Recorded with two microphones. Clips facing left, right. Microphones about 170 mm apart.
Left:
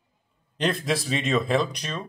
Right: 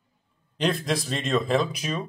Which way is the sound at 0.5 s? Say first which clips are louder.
Even; centre (ahead or behind).